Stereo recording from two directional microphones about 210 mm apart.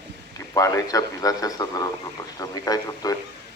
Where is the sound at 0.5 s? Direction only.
15° left (ahead or behind).